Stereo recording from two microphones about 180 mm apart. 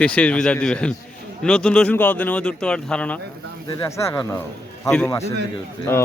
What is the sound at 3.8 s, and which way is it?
Speech, 15° left (ahead or behind).